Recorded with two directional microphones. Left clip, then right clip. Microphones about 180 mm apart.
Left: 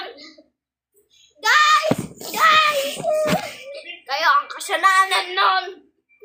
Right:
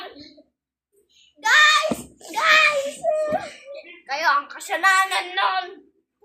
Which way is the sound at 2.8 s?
5° left (ahead or behind).